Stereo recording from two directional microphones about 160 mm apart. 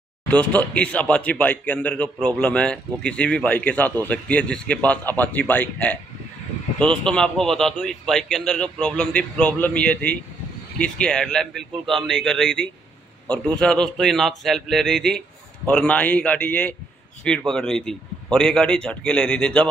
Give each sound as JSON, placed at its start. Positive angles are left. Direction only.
{"t": 0.3, "sound": "a man's voice", "side_deg": 10}